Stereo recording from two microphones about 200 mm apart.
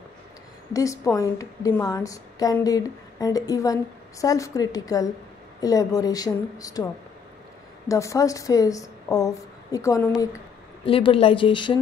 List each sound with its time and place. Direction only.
0.7 s a woman's voice: 15° left (ahead or behind)
7.9 s a woman's voice: 15° left (ahead or behind)
10.9 s a woman's voice: 25° left (ahead or behind)